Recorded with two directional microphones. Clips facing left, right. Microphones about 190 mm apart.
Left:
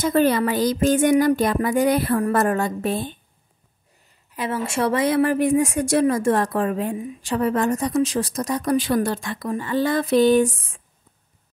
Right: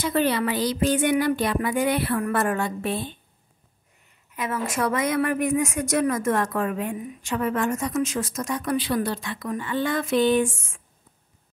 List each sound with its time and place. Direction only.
0.0 s speech: 45° left (ahead or behind)
4.4 s a woman's voice: 30° left (ahead or behind)